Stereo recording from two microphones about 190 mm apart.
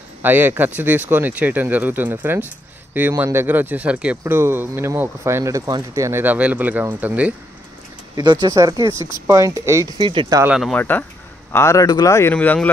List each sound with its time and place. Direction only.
0.2 s speech: 10° right (ahead or behind)
8.2 s speech: 25° right (ahead or behind)
10.4 s speech: 5° right (ahead or behind)
10.7 s speech: 10° left (ahead or behind)